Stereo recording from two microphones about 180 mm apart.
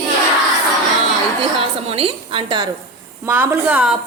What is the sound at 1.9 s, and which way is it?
Speech, 30° right (ahead or behind).